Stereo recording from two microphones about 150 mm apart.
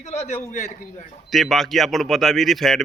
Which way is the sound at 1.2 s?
Centre (ahead or behind).